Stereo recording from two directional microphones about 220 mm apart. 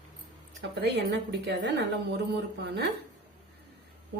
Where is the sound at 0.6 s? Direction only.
50° right (ahead or behind).